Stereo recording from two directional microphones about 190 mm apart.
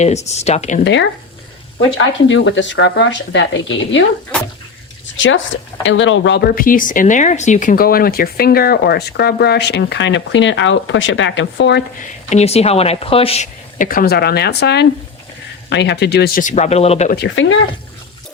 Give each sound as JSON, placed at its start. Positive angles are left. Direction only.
{"t": 0.0, "sound": "a woman's voice", "side_deg": 35}
{"t": 2.0, "sound": "speech", "side_deg": 80}
{"t": 5.1, "sound": "speech", "side_deg": 85}
{"t": 6.5, "sound": "speech", "side_deg": 45}
{"t": 12.3, "sound": "a woman's voice", "side_deg": 35}
{"t": 17.1, "sound": "speech", "side_deg": 65}